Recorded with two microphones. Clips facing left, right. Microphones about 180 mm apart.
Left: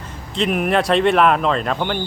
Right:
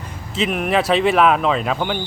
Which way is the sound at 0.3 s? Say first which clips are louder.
Left 1 dB; centre (ahead or behind).